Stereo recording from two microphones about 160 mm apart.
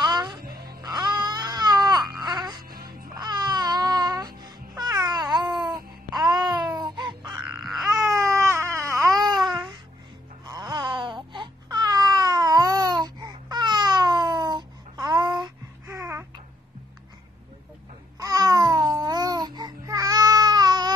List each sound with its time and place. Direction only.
0.0 s music: 30° right (ahead or behind)
0.4 s music: 75° right (ahead or behind)
0.8 s baby cry: 25° right (ahead or behind)
2.2 s wail: 25° right (ahead or behind)
2.7 s music: 70° right (ahead or behind)
3.2 s music: 25° right (ahead or behind)
6.7 s baby cry: 30° right (ahead or behind)
7.6 s babbling: centre (ahead or behind)
8.0 s baby cry: 20° right (ahead or behind)
9.2 s a sound: centre (ahead or behind)
10.4 s baby cry: 25° right (ahead or behind)
18.2 s babbling: 20° right (ahead or behind)